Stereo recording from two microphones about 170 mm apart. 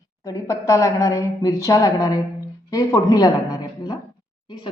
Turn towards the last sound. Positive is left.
turn(degrees=20)  # may be behind; listen again after turning